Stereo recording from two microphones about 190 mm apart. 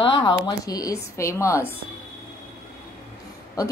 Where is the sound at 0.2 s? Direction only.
25° left (ahead or behind).